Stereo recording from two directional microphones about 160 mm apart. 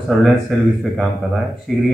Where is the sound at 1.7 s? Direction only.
5° left (ahead or behind).